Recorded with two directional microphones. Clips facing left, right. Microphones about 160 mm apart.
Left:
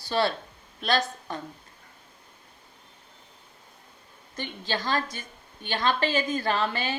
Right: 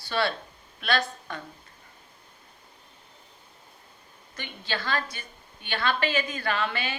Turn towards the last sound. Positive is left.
turn(degrees=40)  # may be behind; listen again after turning